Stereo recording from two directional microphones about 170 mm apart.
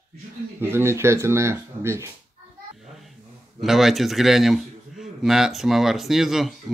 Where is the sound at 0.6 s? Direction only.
15° right (ahead or behind).